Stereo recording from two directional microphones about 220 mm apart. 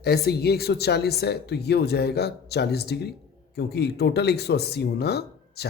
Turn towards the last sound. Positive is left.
turn(degrees=45)  # may be behind; listen again after turning